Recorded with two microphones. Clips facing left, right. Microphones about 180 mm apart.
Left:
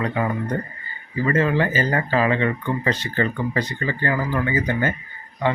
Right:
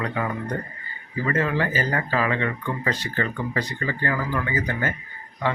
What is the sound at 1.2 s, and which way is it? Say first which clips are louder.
Speech: left 4 dB; 25° left (ahead or behind).